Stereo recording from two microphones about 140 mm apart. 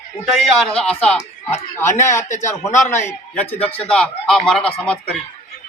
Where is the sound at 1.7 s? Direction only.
20° left (ahead or behind).